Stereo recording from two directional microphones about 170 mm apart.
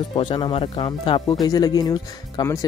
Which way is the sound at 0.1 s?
30° left (ahead or behind).